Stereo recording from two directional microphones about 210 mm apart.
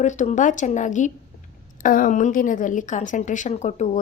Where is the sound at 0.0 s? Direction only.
35° left (ahead or behind).